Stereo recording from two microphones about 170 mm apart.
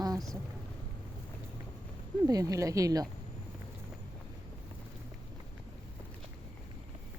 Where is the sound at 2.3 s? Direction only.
20° right (ahead or behind).